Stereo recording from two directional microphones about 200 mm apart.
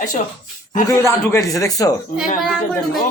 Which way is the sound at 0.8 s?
15° left (ahead or behind).